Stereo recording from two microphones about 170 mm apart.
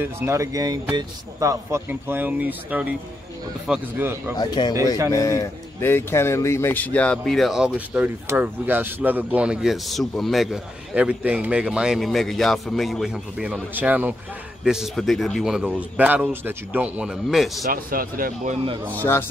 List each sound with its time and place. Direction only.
0.0 s speech: 15° right (ahead or behind)
4.4 s speech: 25° left (ahead or behind); by 17.6 s centre (ahead or behind)
17.6 s speech: 55° right (ahead or behind)